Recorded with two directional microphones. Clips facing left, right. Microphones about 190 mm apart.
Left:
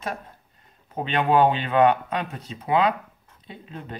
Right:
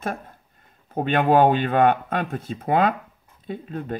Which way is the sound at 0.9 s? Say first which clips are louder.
Right 3 dB; 50° right (ahead or behind).